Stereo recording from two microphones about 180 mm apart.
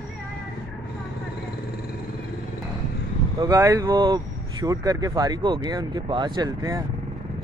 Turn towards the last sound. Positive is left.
turn(degrees=-20)  # may be behind; listen again after turning